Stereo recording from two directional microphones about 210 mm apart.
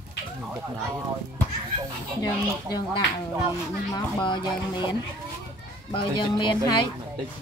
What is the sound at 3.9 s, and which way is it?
Speech, 20° left (ahead or behind).